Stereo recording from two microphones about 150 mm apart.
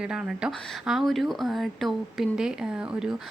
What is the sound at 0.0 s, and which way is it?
Speech, 5° right (ahead or behind).